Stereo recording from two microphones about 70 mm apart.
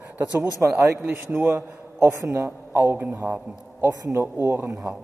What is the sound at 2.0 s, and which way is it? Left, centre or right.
Speech, right.